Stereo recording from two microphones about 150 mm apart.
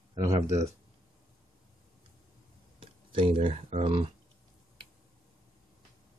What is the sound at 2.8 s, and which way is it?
Speech, 35° right (ahead or behind).